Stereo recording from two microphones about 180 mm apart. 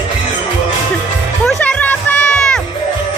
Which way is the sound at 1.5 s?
10° left (ahead or behind).